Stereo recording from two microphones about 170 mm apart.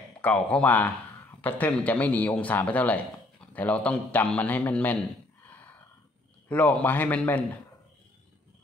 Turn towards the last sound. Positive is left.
turn(degrees=10)  # may be behind; listen again after turning